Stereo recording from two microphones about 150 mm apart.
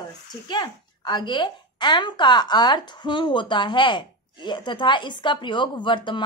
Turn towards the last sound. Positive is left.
turn(degrees=30)  # may be behind; listen again after turning